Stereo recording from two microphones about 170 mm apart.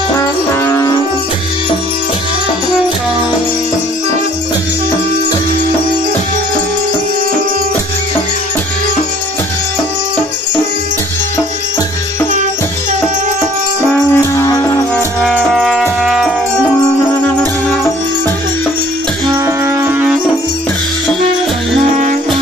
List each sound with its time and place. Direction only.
0.7 s music: 15° left (ahead or behind)
14.1 s music: 15° left (ahead or behind)
15.2 s music: centre (ahead or behind)
19.2 s music: 20° right (ahead or behind)